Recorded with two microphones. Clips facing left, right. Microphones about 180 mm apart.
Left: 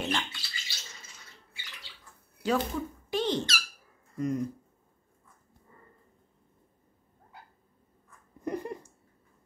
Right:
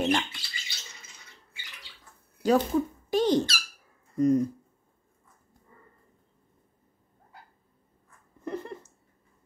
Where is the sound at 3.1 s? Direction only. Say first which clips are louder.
Right 6 dB; 40° right (ahead or behind).